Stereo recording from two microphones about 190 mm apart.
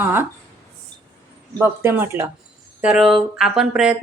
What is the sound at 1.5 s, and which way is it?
A woman's voice, 10° right (ahead or behind).